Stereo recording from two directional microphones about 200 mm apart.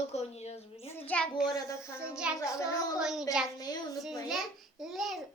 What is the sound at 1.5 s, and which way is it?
Speech, 15° left (ahead or behind).